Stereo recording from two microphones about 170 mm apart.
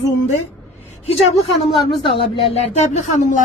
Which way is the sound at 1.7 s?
30° left (ahead or behind).